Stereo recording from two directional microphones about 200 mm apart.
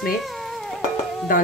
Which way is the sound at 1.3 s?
40° left (ahead or behind).